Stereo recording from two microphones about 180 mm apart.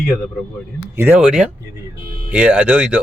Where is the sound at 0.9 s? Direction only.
10° right (ahead or behind).